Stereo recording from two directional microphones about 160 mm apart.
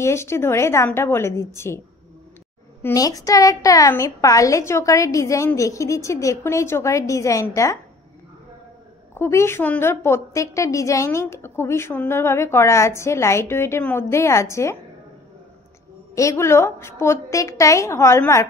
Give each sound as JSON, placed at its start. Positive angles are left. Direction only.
{"t": 0.0, "sound": "a woman's voice", "side_deg": 15}
{"t": 2.8, "sound": "a woman's voice", "side_deg": 20}
{"t": 9.1, "sound": "a woman's voice", "side_deg": 15}
{"t": 16.2, "sound": "a woman's voice", "side_deg": 20}